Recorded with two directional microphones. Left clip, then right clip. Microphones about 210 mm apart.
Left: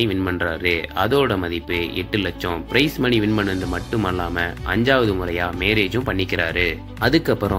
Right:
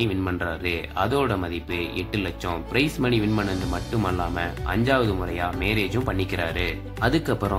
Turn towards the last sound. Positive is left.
turn(degrees=20)  # may be behind; listen again after turning